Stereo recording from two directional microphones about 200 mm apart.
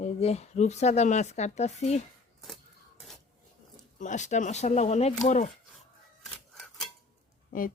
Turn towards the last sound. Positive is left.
turn(degrees=45)  # may be behind; listen again after turning